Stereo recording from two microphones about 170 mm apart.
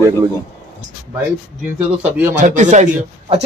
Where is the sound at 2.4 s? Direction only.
45° right (ahead or behind).